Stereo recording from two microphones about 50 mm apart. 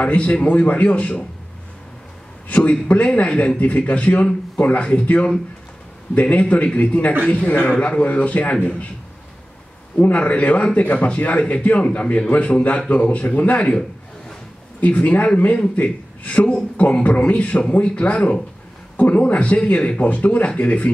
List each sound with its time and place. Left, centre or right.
0.0 s speech: left
2.4 s speech: left
9.9 s speech: left
14.8 s speech: left